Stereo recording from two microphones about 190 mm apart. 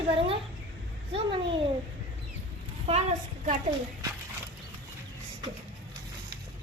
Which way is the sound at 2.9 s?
40° right (ahead or behind).